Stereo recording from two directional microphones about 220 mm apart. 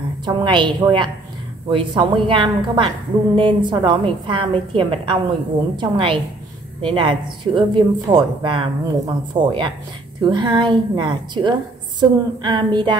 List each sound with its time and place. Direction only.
0.2 s speech: 20° right (ahead or behind)